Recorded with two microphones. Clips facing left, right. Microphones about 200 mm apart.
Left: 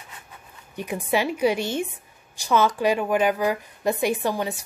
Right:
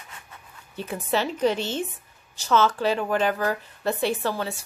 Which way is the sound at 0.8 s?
15° left (ahead or behind).